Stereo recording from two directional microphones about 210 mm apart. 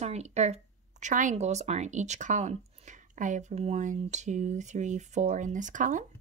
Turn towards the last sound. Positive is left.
turn(degrees=-40)  # may be behind; listen again after turning